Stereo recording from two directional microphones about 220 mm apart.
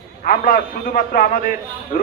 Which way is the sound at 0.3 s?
40° left (ahead or behind).